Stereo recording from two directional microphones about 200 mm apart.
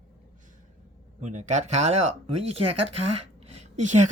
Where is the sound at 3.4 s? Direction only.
30° right (ahead or behind).